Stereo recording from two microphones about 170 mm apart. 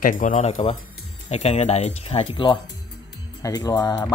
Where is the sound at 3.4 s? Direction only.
20° left (ahead or behind).